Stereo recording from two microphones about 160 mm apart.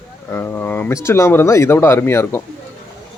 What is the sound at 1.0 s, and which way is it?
Speech, 15° left (ahead or behind).